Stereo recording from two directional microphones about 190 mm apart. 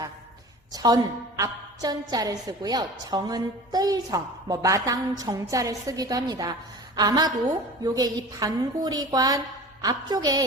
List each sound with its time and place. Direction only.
0.7 s a woman's voice: 20° right (ahead or behind)